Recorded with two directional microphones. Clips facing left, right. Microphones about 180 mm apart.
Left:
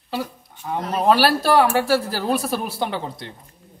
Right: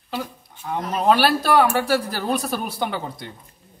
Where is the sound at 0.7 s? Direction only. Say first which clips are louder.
Left 1 dB; centre (ahead or behind).